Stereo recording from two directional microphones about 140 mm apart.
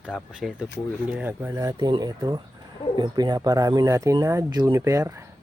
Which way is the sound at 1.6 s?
30° right (ahead or behind).